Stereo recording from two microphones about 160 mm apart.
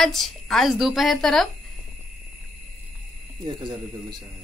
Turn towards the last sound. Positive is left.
turn(degrees=-30)  # may be behind; listen again after turning